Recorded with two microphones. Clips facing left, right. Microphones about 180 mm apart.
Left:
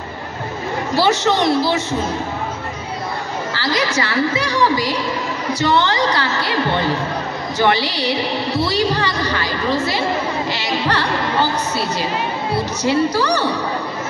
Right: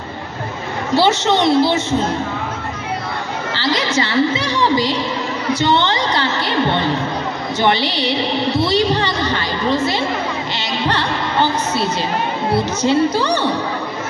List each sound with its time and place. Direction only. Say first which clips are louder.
0.9 s a woman's voice: right 2 dB; 25° right (ahead or behind)
3.5 s a woman's voice: right 2 dB; 25° right (ahead or behind)